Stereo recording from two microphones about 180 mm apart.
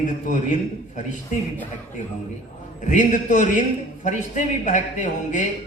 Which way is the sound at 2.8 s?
45° left (ahead or behind).